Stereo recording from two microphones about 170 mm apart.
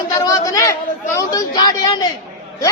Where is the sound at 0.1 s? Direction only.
20° left (ahead or behind).